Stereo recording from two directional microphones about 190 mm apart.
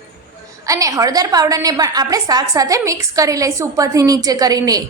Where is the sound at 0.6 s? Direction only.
15° right (ahead or behind).